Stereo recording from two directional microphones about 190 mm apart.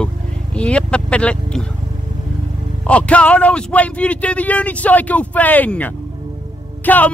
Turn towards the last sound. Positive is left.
turn(degrees=10)  # may be behind; listen again after turning